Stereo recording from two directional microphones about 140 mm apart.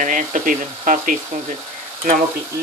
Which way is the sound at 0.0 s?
70° right (ahead or behind).